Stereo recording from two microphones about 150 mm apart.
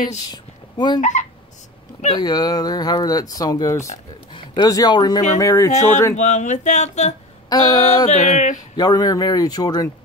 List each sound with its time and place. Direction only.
0.3 s a sound: 30° left (ahead or behind)
2.1 s speech: 25° left (ahead or behind)
6.1 s speech: 55° left (ahead or behind)
7.4 s a sound: 25° left (ahead or behind)
7.7 s speech: 50° left (ahead or behind)
8.7 s speech: 25° left (ahead or behind)